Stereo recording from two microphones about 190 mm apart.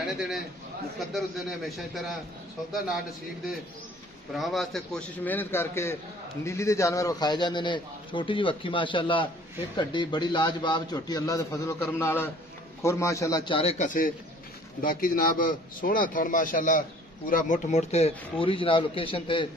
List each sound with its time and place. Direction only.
0.0 s a man's voice: centre (ahead or behind)
4.3 s a man's voice: centre (ahead or behind); by 19.5 s 25° left (ahead or behind)